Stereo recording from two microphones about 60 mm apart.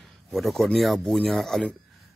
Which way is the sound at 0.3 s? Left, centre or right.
Centre.